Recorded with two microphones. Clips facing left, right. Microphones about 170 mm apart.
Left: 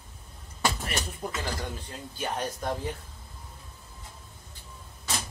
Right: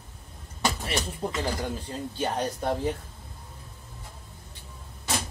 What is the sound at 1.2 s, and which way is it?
Speech, 30° right (ahead or behind).